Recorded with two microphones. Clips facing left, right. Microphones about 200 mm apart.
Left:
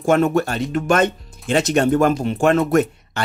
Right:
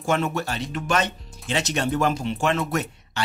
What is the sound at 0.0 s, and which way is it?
Speech, 50° left (ahead or behind).